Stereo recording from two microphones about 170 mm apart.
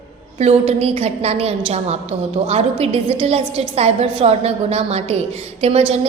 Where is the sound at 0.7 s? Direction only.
40° right (ahead or behind).